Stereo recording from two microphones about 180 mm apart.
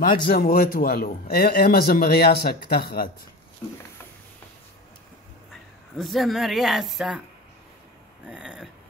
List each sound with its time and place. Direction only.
0.0 s a man's voice: 50° left (ahead or behind)
5.9 s speech: centre (ahead or behind)
8.3 s speech: 5° right (ahead or behind)